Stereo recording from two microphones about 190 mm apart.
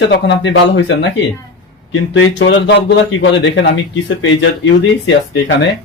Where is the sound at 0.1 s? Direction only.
65° left (ahead or behind).